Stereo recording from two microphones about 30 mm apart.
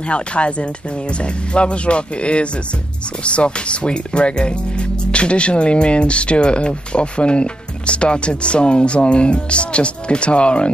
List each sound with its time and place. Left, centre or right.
0.1 s speech: left